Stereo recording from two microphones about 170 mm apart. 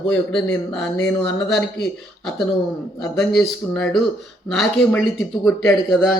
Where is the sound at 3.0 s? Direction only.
5° left (ahead or behind).